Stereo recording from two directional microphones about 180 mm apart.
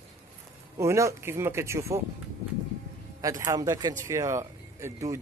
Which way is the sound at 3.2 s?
20° right (ahead or behind).